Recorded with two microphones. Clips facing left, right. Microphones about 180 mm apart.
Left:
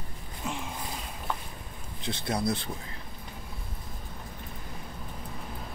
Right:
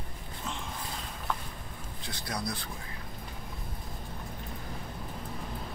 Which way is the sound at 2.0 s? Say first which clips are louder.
Left 7 dB; 25° left (ahead or behind).